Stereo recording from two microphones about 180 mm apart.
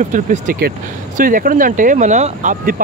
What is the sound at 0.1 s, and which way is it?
Speech, 45° right (ahead or behind).